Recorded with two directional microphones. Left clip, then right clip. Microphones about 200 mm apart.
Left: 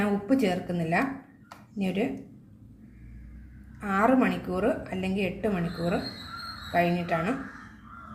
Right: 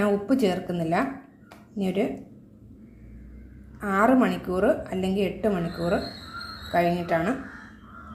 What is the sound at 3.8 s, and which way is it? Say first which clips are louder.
A woman's voice: right 3 dB; 25° right (ahead or behind).